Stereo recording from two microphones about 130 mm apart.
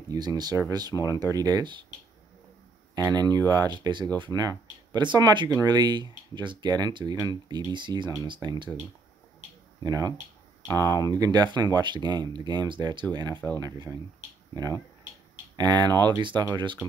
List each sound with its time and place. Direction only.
0.1 s speech: 30° right (ahead or behind)
0.9 s speech: 25° left (ahead or behind)
1.3 s speech: 30° right (ahead or behind)
3.0 s speech: 30° right (ahead or behind)
10.7 s speech: 30° right (ahead or behind)
15.5 s speech: 30° right (ahead or behind)